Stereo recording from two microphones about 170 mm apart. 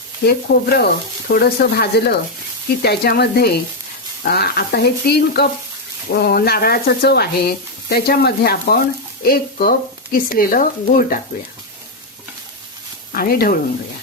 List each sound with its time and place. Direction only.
0.3 s speech: 70° left (ahead or behind)
13.1 s speech: 60° left (ahead or behind)